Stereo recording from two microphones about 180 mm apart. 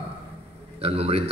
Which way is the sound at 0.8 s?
35° right (ahead or behind).